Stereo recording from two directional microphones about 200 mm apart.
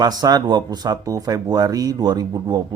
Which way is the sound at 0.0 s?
20° right (ahead or behind).